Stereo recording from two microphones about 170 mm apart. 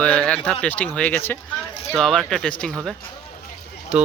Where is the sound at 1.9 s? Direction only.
Centre (ahead or behind).